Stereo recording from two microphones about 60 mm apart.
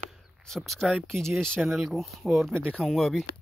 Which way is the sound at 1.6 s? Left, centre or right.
Centre.